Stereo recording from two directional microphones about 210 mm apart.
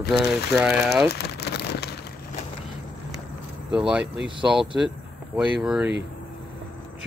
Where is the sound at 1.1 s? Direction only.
50° left (ahead or behind).